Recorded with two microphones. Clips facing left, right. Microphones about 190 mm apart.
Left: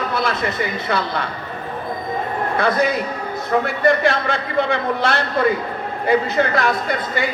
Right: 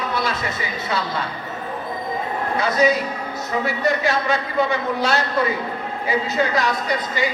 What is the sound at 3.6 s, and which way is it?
A man's voice, 55° left (ahead or behind).